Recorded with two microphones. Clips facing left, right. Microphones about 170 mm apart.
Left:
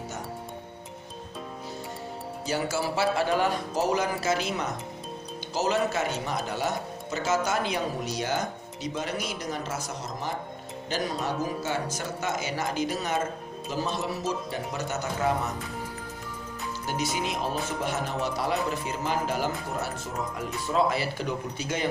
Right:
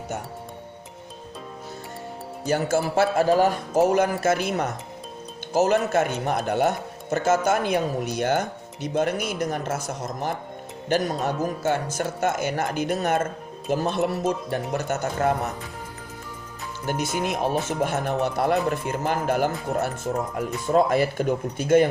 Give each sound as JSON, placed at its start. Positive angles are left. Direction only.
{"t": 2.5, "sound": "speech", "side_deg": -50}
{"t": 16.8, "sound": "speech", "side_deg": -55}